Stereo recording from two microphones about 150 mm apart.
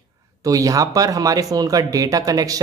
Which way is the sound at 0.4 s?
20° right (ahead or behind).